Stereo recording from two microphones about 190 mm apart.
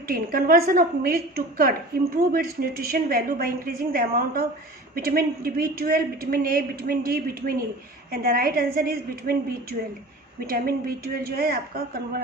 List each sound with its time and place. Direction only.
0.1 s a woman's voice: 50° right (ahead or behind)
10.4 s a woman's voice: 50° right (ahead or behind)